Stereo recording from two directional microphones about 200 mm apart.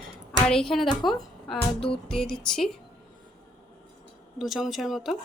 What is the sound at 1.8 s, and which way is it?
Music, 25° left (ahead or behind).